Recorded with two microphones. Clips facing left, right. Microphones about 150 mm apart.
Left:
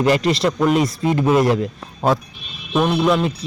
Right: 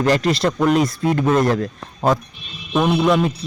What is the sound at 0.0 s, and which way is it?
A man's voice, 5° left (ahead or behind).